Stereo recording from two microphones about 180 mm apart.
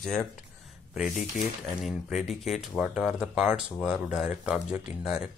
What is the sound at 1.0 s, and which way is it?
Speech, 45° left (ahead or behind).